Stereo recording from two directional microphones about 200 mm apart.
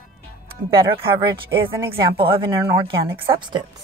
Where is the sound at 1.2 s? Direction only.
25° right (ahead or behind).